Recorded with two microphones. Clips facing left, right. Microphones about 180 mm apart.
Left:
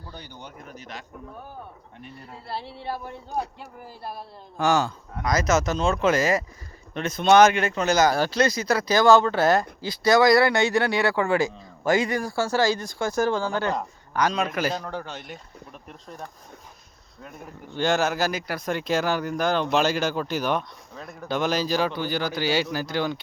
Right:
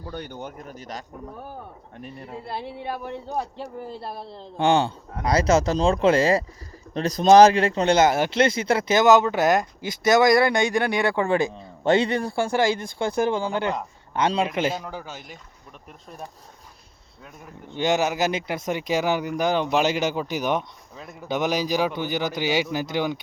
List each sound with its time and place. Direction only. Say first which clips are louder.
0.1 s speech: right 9 dB; 60° right (ahead or behind)
2.3 s speech: right 2 dB; 20° right (ahead or behind)
3.8 s speech: right 3 dB; 25° right (ahead or behind)
12.4 s speech: even; 20° right (ahead or behind)
14.7 s speech: left 1 dB; 5° right (ahead or behind)
17.7 s speech: right 1 dB; 15° right (ahead or behind)